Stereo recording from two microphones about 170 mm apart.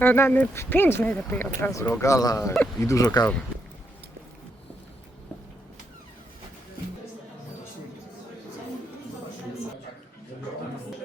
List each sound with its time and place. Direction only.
0.0 s speech: 10° left (ahead or behind)